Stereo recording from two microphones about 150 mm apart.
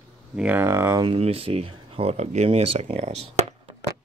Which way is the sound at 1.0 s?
40° right (ahead or behind).